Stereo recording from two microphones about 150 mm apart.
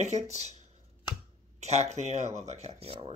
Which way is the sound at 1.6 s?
45° right (ahead or behind).